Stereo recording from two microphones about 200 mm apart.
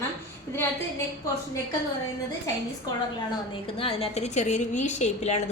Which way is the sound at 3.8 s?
30° left (ahead or behind).